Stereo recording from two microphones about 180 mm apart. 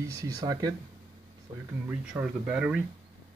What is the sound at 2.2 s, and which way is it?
Speech, 5° right (ahead or behind).